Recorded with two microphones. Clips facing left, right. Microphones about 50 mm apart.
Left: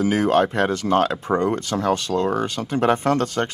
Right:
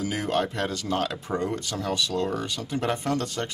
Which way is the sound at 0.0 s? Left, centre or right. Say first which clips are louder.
Left 8 dB; left.